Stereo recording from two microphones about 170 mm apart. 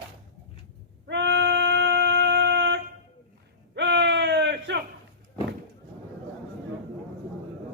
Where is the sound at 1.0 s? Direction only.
90° right.